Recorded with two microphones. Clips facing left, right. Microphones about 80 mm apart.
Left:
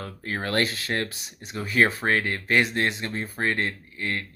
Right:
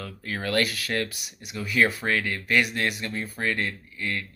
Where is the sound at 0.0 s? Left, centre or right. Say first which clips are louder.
Left 1 dB; left.